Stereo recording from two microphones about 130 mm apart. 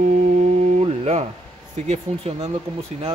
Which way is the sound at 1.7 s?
70° right (ahead or behind).